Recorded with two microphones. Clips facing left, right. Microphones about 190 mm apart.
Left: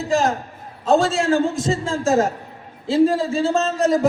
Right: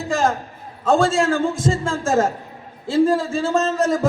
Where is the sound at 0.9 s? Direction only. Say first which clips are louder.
Even; 50° right (ahead or behind).